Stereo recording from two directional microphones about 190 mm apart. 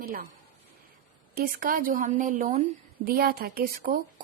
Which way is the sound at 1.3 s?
50° right (ahead or behind).